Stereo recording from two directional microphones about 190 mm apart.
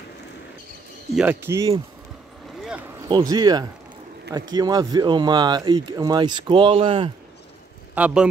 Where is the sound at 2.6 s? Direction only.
5° right (ahead or behind).